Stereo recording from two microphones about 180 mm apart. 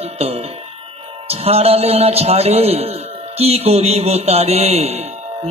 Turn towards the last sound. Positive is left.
turn(degrees=-35)  # may be behind; listen again after turning